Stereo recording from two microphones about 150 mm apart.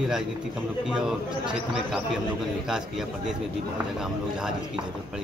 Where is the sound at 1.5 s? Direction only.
5° right (ahead or behind).